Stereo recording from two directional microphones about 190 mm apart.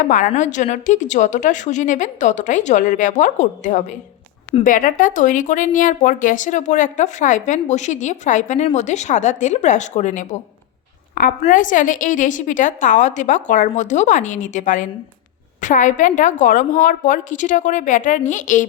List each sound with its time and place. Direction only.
0.0 s a woman's voice: 45° left (ahead or behind)